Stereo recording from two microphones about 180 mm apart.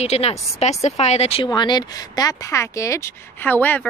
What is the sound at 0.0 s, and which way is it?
Speech, 35° left (ahead or behind).